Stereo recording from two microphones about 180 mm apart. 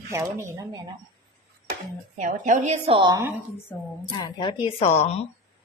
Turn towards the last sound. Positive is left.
turn(degrees=35)  # may be behind; listen again after turning